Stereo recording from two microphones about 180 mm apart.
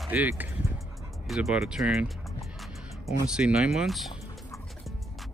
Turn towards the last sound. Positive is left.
turn(degrees=0)  # may be behind; listen again after turning